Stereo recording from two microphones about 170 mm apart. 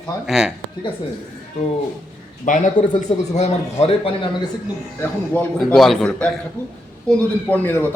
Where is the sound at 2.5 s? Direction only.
50° left (ahead or behind); by 4.5 s 30° left (ahead or behind).